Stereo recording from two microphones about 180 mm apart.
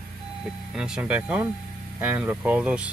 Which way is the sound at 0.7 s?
5° right (ahead or behind).